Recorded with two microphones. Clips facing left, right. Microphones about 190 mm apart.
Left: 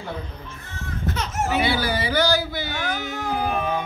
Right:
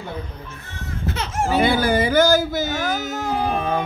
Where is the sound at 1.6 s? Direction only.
50° right (ahead or behind); by 3.6 s 35° right (ahead or behind).